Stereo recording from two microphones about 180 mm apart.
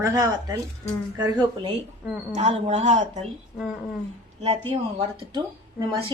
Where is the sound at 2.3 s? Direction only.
40° right (ahead or behind).